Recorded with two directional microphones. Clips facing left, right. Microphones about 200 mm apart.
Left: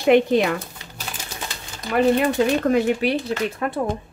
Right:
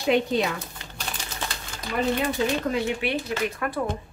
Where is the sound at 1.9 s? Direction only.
65° left (ahead or behind).